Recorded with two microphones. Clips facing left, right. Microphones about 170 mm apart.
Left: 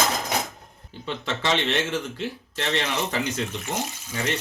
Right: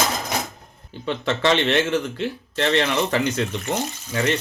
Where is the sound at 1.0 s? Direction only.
65° right (ahead or behind).